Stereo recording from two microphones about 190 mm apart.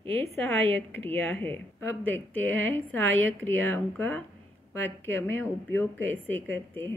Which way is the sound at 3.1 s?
85° right.